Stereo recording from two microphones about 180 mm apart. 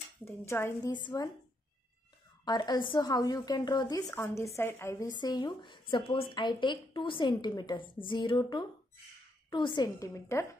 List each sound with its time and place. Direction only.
0.2 s a woman's voice: 15° left (ahead or behind)
2.4 s a woman's voice: 25° left (ahead or behind)